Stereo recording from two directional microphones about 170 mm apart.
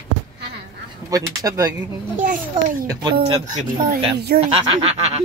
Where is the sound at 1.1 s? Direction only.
20° right (ahead or behind).